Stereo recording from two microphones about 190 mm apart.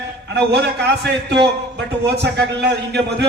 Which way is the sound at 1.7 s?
60° right (ahead or behind).